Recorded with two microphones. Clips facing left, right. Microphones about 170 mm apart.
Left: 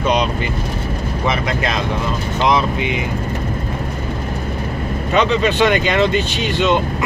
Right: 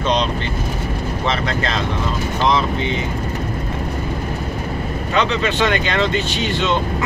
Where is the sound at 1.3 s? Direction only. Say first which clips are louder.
Left 1 dB; 15° left (ahead or behind).